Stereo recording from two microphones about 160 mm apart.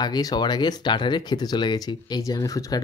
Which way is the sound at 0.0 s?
25° left (ahead or behind).